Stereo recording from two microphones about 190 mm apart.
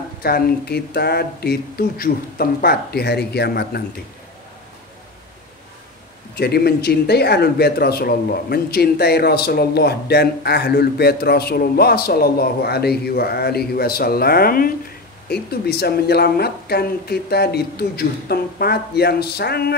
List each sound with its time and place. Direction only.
0.2 s speech: 55° left (ahead or behind)
6.3 s speech: 55° left (ahead or behind)